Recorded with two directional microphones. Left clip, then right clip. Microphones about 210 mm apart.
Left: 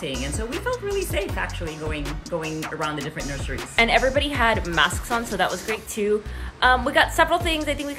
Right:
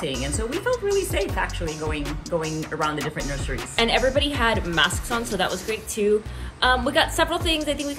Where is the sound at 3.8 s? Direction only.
15° left (ahead or behind).